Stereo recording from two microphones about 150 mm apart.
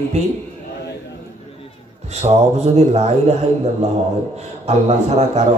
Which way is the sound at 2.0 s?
45° right (ahead or behind).